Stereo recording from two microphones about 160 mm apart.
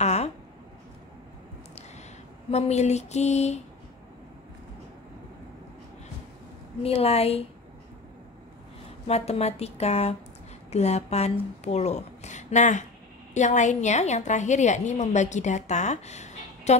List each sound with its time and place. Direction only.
0.0 s a sound: 45° left (ahead or behind)
2.5 s a woman's voice: 45° left (ahead or behind)
6.8 s speech: 40° left (ahead or behind)
9.0 s a woman's voice: 40° left (ahead or behind)